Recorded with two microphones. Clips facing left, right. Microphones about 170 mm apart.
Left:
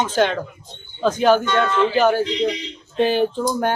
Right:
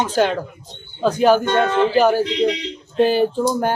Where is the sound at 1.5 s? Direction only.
50° right (ahead or behind).